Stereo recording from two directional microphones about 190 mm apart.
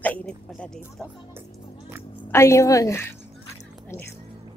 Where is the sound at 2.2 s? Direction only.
15° left (ahead or behind).